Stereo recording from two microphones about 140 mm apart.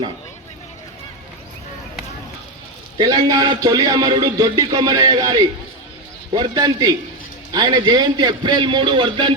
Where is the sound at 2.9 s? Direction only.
25° right (ahead or behind).